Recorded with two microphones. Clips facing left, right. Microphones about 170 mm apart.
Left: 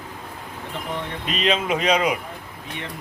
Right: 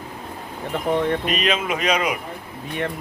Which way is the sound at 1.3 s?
25° left (ahead or behind).